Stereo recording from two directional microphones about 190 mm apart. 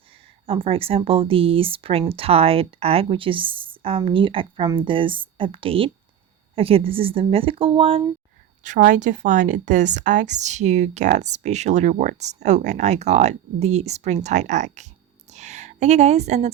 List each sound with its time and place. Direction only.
0.4 s speech: 30° right (ahead or behind)
8.6 s a woman's voice: 40° right (ahead or behind)
15.3 s a sound: 35° right (ahead or behind)